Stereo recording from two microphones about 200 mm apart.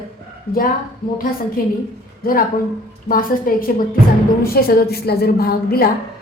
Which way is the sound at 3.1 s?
45° left (ahead or behind).